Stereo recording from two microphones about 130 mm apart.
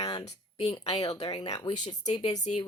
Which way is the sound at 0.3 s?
50° left (ahead or behind).